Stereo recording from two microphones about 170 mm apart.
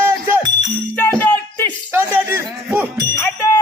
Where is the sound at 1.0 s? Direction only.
10° left (ahead or behind).